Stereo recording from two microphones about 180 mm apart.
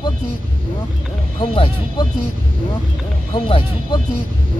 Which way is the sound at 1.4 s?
25° left (ahead or behind).